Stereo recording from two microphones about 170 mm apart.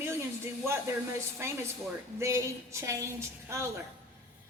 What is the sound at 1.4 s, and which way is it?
A woman's voice, 15° right (ahead or behind).